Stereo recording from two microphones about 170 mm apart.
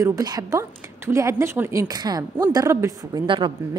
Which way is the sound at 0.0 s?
20° right (ahead or behind).